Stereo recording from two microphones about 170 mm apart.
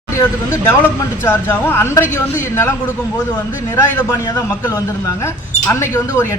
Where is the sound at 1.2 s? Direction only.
15° left (ahead or behind).